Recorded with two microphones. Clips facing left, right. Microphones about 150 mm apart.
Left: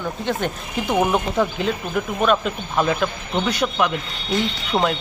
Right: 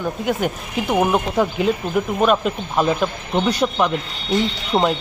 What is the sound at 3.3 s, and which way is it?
Speech, 30° right (ahead or behind).